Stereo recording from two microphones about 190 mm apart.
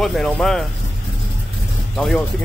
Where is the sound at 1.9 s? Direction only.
5° left (ahead or behind).